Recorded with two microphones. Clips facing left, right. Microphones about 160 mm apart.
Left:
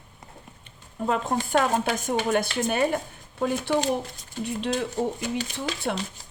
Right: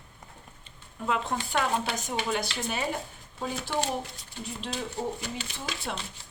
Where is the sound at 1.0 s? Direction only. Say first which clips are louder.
Left 4 dB; 40° left (ahead or behind).